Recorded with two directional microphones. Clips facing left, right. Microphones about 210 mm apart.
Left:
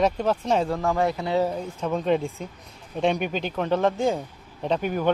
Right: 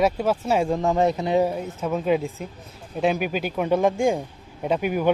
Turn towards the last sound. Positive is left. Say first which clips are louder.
# right 2 dB
turn(degrees=-10)  # may be behind; listen again after turning